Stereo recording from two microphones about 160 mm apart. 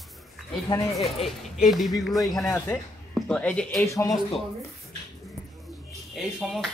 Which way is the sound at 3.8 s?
20° left (ahead or behind).